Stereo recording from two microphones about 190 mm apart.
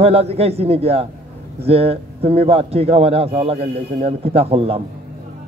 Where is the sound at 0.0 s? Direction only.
30° right (ahead or behind).